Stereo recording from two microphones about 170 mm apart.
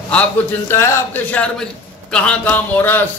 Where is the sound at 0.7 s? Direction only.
15° left (ahead or behind).